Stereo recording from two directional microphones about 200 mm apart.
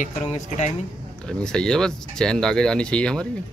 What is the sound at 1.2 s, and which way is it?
Speech, 5° left (ahead or behind).